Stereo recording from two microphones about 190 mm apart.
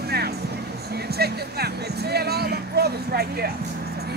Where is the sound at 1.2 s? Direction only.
55° right (ahead or behind).